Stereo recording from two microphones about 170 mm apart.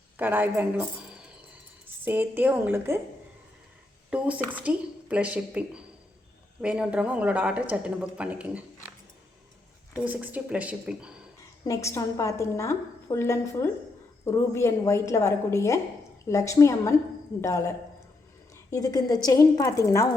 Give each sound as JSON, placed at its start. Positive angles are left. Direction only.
{"t": 0.2, "sound": "speech", "side_deg": -10}
{"t": 2.0, "sound": "speech", "side_deg": -10}
{"t": 4.1, "sound": "speech", "side_deg": -10}
{"t": 9.9, "sound": "speech", "side_deg": -10}
{"t": 11.6, "sound": "a woman's voice", "side_deg": 20}